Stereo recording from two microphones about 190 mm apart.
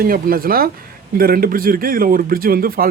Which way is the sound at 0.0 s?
50° right (ahead or behind).